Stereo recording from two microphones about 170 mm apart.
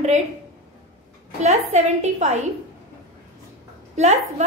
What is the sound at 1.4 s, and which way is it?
Speech, 40° right (ahead or behind).